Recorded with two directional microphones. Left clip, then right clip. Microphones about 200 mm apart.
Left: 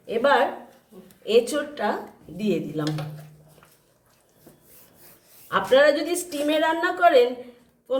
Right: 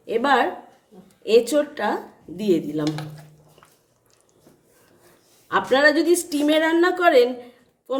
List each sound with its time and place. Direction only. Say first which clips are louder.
0.0 s a sound: right 1 dB; 50° right (ahead or behind)
1.2 s a woman's voice: right 3 dB; 50° right (ahead or behind)
5.5 s a woman's voice: even; 50° right (ahead or behind)